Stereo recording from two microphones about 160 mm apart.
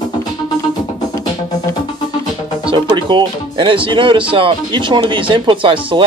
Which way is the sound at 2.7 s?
30° right (ahead or behind).